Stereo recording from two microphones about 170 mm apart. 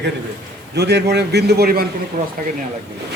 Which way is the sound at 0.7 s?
80° right.